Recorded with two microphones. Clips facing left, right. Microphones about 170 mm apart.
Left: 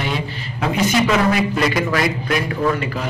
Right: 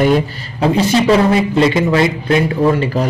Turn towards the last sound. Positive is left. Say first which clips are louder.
# right 6 dB
turn(degrees=-30)  # may be behind; listen again after turning